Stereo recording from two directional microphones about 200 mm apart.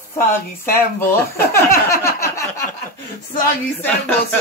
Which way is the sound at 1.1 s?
15° left (ahead or behind).